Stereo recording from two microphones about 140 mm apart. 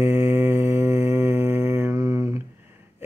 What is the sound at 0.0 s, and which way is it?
Mantra, 15° right (ahead or behind).